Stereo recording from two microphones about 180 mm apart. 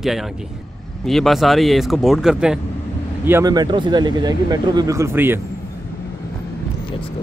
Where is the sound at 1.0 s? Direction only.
Centre (ahead or behind).